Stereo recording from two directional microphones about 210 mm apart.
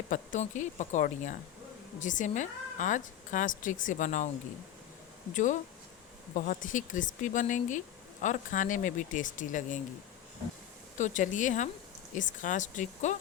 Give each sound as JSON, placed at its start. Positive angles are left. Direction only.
{"t": 0.1, "sound": "a woman's voice", "side_deg": 35}
{"t": 5.3, "sound": "a woman's voice", "side_deg": 35}
{"t": 10.9, "sound": "a woman's voice", "side_deg": 35}